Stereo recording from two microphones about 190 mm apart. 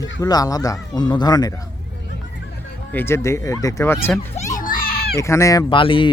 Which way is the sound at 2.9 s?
15° left (ahead or behind).